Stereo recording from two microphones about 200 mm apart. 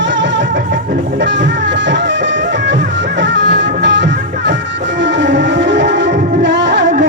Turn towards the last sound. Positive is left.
turn(degrees=-60)  # may be behind; listen again after turning